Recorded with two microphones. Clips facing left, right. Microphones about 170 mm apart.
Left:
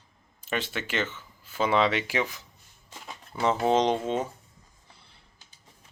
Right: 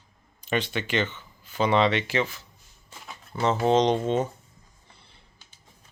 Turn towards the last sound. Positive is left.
turn(degrees=5)  # may be behind; listen again after turning